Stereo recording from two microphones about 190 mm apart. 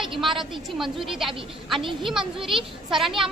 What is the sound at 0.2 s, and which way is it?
A child's voice, centre (ahead or behind).